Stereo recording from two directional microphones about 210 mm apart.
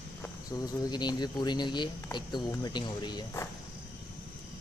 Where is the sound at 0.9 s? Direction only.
20° left (ahead or behind).